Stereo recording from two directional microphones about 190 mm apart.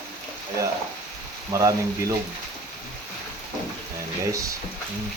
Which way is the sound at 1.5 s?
20° right (ahead or behind).